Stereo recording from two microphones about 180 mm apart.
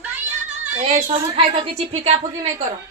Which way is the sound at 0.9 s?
40° right (ahead or behind).